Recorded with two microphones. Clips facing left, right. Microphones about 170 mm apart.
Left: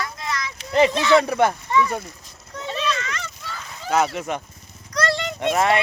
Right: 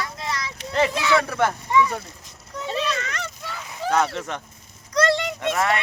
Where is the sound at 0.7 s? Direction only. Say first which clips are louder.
Left 4 dB; 15° left (ahead or behind).